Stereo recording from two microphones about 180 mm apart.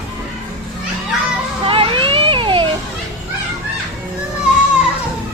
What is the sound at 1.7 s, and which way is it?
Children playing, 30° right (ahead or behind).